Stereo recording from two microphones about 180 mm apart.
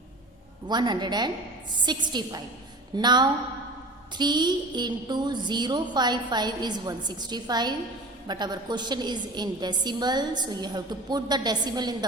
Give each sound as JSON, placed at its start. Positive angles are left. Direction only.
{"t": 0.7, "sound": "a woman's voice", "side_deg": -25}